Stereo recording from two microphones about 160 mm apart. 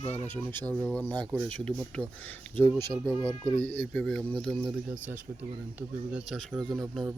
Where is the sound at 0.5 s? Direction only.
10° left (ahead or behind).